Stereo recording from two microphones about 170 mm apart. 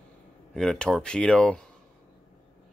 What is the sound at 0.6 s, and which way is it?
Speech, 5° left (ahead or behind).